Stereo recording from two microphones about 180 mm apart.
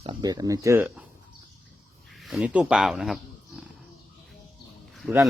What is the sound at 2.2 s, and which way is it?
Speech, centre (ahead or behind).